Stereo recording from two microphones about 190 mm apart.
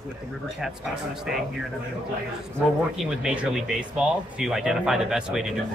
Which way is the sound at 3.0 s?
5° right (ahead or behind).